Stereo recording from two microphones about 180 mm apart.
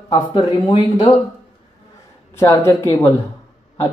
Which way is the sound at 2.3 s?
20° left (ahead or behind).